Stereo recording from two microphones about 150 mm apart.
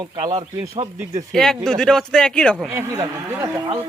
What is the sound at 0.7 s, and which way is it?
Speech, 50° right (ahead or behind).